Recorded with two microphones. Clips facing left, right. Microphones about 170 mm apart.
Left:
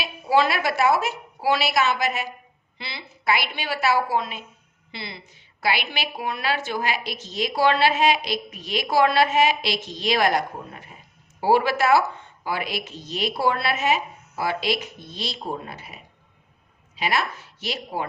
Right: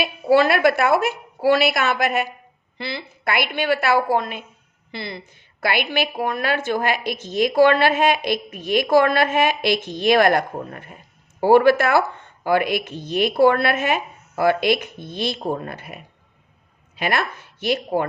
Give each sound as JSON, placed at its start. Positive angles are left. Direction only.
{"t": 0.0, "sound": "a woman's voice", "side_deg": -55}